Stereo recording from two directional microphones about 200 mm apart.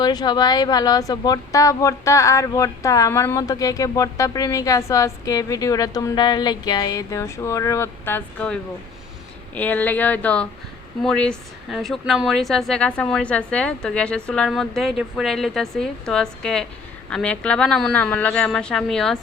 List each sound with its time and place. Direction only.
0.0 s speech: 20° left (ahead or behind)
9.6 s a woman's voice: 10° left (ahead or behind)